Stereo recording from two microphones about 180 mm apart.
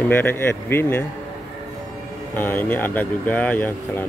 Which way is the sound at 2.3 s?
10° left (ahead or behind).